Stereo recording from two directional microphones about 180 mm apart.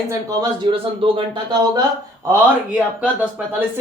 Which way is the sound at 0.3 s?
30° right (ahead or behind).